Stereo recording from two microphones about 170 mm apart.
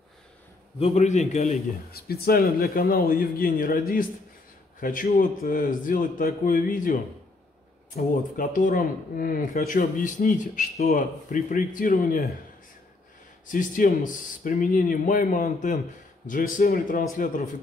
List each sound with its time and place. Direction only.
0.7 s a man's voice: 40° left (ahead or behind)
1.9 s speech: 65° left (ahead or behind)
13.5 s speech: 50° left (ahead or behind)